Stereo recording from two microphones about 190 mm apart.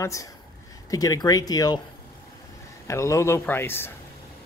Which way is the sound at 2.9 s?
15° left (ahead or behind).